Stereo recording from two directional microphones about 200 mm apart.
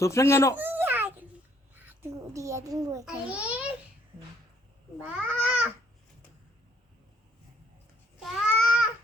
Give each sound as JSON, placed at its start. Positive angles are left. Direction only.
{"t": 0.0, "sound": "a child's voice", "side_deg": 15}
{"t": 0.5, "sound": "babbling", "side_deg": -10}
{"t": 1.7, "sound": "a child's voice", "side_deg": -10}
{"t": 4.9, "sound": "speech", "side_deg": -5}
{"t": 8.2, "sound": "babbling", "side_deg": 0}